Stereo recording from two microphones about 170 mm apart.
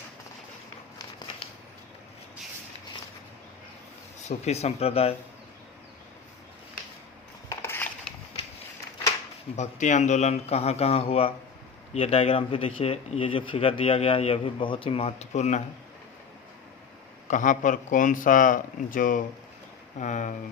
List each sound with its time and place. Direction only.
4.2 s speech: 40° left (ahead or behind)
7.5 s a sound: 15° left (ahead or behind)
9.6 s speech: 45° left (ahead or behind)
17.2 s speech: 50° left (ahead or behind)